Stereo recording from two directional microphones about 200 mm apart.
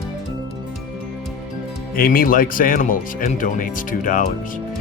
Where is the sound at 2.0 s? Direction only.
45° left (ahead or behind).